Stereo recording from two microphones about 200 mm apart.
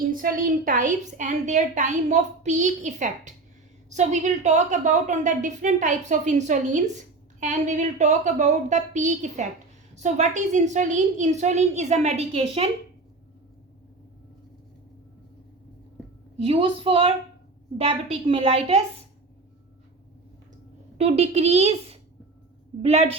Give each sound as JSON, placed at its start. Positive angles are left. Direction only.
{"t": 0.1, "sound": "a woman's voice", "side_deg": -45}
{"t": 16.5, "sound": "a woman's voice", "side_deg": -25}
{"t": 21.0, "sound": "a woman's voice", "side_deg": -30}